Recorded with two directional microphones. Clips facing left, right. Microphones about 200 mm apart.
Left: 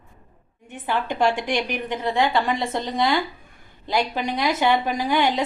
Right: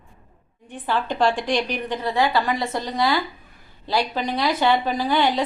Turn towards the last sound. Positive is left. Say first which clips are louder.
# right 1 dB
turn(degrees=15)  # may be behind; listen again after turning